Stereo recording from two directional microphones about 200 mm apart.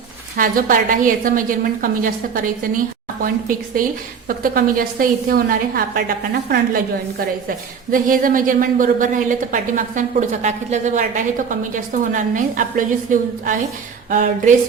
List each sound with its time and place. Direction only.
0.3 s a woman's voice: 45° right (ahead or behind)
7.9 s a woman's voice: 45° right (ahead or behind)